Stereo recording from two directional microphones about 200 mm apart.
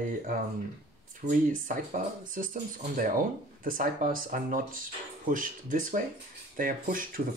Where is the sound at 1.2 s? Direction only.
40° right (ahead or behind).